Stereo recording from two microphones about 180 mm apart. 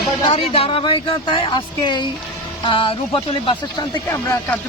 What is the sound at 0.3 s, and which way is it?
Speech, 30° left (ahead or behind).